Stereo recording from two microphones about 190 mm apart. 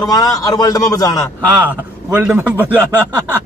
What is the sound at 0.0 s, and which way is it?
A man's voice, 20° left (ahead or behind).